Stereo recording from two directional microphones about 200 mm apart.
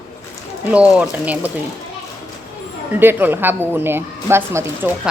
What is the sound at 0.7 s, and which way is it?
Speech, 5° right (ahead or behind).